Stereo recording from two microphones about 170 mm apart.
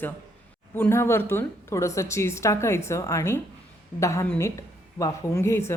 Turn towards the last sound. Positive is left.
turn(degrees=15)  # may be behind; listen again after turning